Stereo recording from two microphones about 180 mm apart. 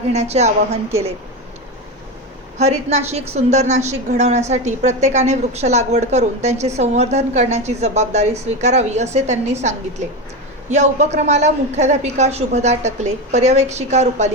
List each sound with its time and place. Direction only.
0.1 s a woman's voice: 40° right (ahead or behind)
2.6 s a woman's voice: 40° right (ahead or behind)